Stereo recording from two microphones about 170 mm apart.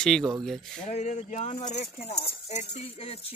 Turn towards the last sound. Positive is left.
turn(degrees=35)  # may be behind; listen again after turning